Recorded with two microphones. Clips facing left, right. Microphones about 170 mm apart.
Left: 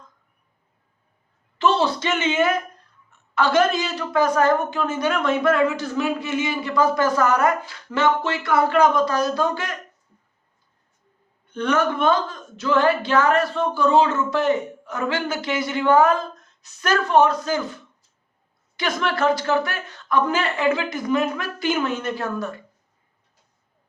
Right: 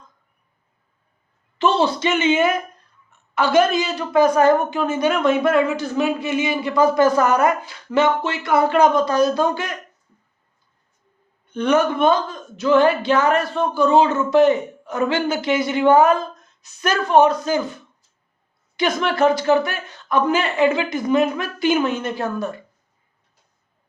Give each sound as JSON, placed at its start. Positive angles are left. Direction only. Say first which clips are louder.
{"t": 1.5, "sound": "a woman's voice", "louder": "right 2 dB", "side_deg": -15}
{"t": 11.5, "sound": "speech", "louder": "right 4 dB", "side_deg": -15}
{"t": 18.8, "sound": "speech", "louder": "right 4 dB", "side_deg": -15}